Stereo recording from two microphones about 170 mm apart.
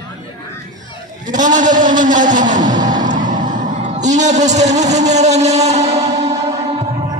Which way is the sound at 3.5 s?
50° right (ahead or behind).